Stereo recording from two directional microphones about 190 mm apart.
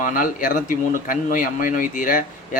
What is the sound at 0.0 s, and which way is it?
Speech, 45° left (ahead or behind).